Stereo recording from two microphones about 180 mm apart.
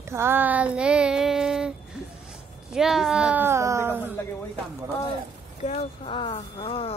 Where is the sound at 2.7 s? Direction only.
Centre (ahead or behind).